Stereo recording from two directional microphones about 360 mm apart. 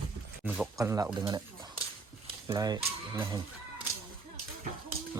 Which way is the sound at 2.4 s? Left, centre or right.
Centre.